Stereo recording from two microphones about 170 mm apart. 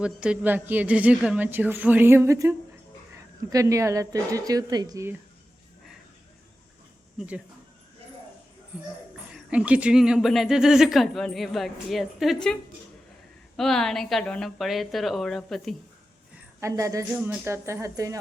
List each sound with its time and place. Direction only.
0.0 s a woman's voice: 5° right (ahead or behind)
9.5 s speech: 10° right (ahead or behind)
13.6 s speech: 5° left (ahead or behind)
16.6 s speech: 20° right (ahead or behind)